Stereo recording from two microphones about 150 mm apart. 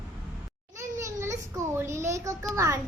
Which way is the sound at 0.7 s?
20° right (ahead or behind).